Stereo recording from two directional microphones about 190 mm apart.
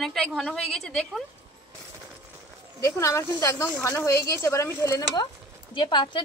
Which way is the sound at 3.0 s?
15° left (ahead or behind).